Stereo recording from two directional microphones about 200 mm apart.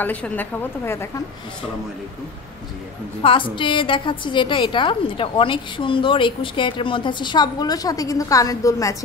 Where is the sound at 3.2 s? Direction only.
25° left (ahead or behind).